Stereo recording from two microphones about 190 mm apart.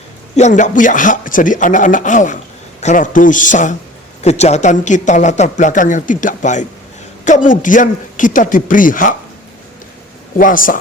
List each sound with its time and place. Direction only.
0.3 s speech: 40° left (ahead or behind)
10.3 s speech: 45° left (ahead or behind)